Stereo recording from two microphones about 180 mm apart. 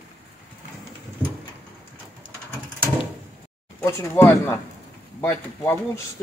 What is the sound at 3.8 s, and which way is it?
Speech, 15° left (ahead or behind).